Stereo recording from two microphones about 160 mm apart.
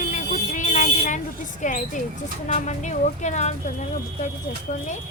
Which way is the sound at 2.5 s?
50° left (ahead or behind).